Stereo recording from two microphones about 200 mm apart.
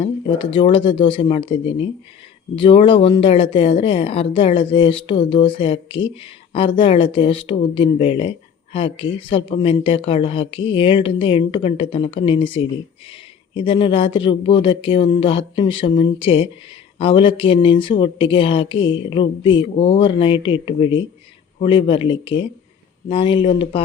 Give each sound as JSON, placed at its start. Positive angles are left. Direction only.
{"t": 0.0, "sound": "speech", "side_deg": 25}